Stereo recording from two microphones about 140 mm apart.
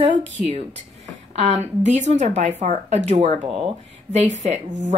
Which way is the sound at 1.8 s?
55° right (ahead or behind).